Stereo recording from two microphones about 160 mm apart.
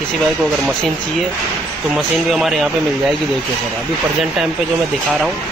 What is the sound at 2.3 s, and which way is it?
Speech, centre (ahead or behind).